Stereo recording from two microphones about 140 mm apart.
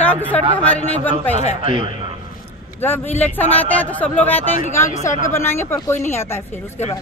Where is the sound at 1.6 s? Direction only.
40° right (ahead or behind).